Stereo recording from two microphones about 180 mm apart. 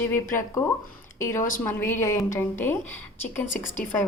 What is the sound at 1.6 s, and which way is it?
A woman's voice, 15° left (ahead or behind).